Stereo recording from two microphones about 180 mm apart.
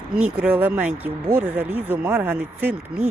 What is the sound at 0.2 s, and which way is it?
Speech, 5° right (ahead or behind).